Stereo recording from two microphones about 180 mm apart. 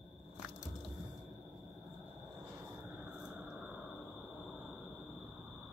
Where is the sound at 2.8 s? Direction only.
5° right (ahead or behind).